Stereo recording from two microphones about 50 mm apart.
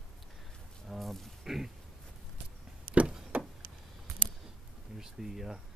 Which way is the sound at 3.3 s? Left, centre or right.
Right.